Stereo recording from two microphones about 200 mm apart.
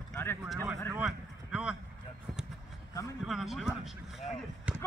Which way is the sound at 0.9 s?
5° right (ahead or behind).